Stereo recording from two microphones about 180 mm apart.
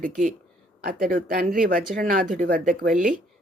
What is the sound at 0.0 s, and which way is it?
Speech, 50° right (ahead or behind).